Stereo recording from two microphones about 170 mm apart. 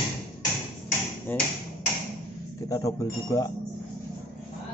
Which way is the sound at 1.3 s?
10° left (ahead or behind).